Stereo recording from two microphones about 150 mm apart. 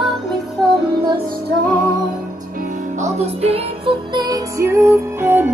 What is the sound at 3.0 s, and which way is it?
Music, 45° right (ahead or behind).